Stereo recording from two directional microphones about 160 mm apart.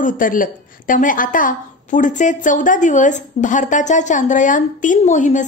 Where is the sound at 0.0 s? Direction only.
60° left (ahead or behind).